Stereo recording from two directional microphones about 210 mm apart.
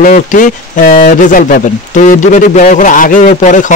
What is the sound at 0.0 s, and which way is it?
A man's voice, 40° left (ahead or behind).